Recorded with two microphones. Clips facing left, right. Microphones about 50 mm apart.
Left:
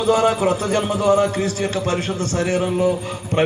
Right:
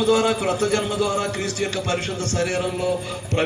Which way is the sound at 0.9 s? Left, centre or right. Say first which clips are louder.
Left 6 dB; left.